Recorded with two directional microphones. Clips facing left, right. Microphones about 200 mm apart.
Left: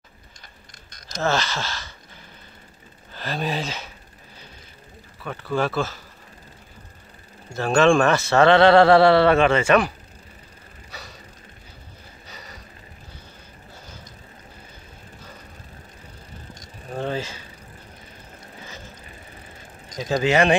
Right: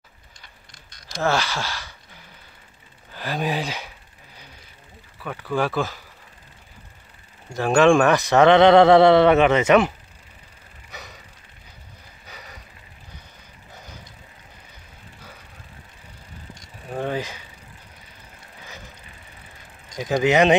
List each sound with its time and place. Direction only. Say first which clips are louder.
1.2 s speech: right 1 dB; 10° right (ahead or behind)
5.2 s speech: even; 10° right (ahead or behind)
7.5 s speech: right 1 dB; 15° right (ahead or behind)
10.9 s gasp: right 1 dB; 15° right (ahead or behind)
12.3 s a sound: right 1 dB; 10° right (ahead or behind)
16.9 s a sound: right 1 dB; 15° right (ahead or behind)
18.6 s ratchet: left 1 dB; 15° right (ahead or behind)
20.0 s speech: right 2 dB; 15° right (ahead or behind)